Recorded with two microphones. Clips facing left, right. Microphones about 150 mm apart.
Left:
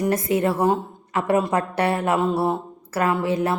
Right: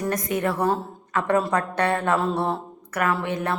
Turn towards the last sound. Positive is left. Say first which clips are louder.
# left 3 dB
turn(degrees=25)  # may be behind; listen again after turning